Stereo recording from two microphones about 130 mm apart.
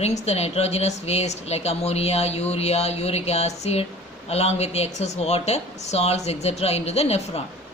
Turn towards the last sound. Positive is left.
turn(degrees=55)  # may be behind; listen again after turning